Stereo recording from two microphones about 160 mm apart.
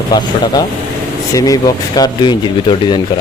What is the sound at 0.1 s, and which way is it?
Speech, 25° left (ahead or behind).